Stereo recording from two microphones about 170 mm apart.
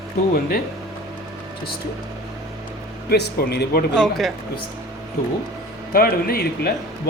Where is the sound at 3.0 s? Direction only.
65° left (ahead or behind).